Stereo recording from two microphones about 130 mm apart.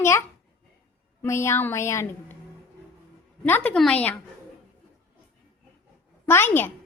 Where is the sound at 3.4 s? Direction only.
15° left (ahead or behind).